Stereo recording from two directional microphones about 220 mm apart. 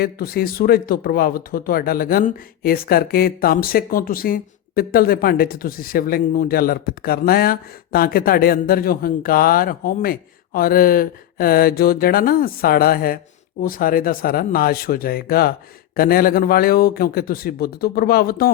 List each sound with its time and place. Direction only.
0.0 s speech: 45° left (ahead or behind)